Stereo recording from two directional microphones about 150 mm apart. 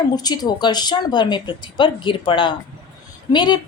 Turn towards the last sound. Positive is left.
turn(degrees=30)  # may be behind; listen again after turning